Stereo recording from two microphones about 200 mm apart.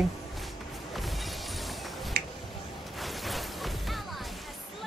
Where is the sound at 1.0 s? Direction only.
Centre (ahead or behind).